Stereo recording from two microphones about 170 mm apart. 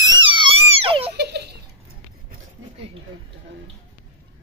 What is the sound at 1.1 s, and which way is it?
Giggle, 75° right (ahead or behind).